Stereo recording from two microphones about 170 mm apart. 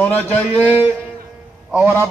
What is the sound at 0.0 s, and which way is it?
Speech, 10° left (ahead or behind).